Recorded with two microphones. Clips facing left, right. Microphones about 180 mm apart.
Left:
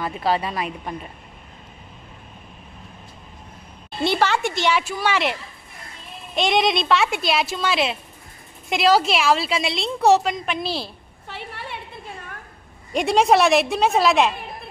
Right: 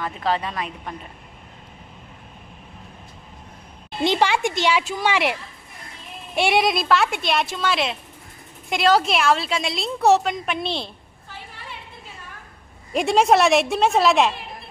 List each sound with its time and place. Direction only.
0.0 s a woman's voice: 10° left (ahead or behind)
4.0 s a woman's voice: 15° right (ahead or behind); by 10.9 s centre (ahead or behind)
11.2 s a sound: 65° left (ahead or behind)
12.9 s a woman's voice: centre (ahead or behind)